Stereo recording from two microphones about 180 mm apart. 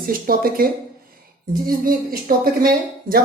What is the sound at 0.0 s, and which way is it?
A woman's voice, 55° right (ahead or behind).